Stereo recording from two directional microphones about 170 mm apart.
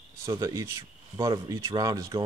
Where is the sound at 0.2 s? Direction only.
20° right (ahead or behind).